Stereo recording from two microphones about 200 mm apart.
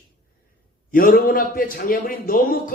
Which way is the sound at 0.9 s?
45° left (ahead or behind).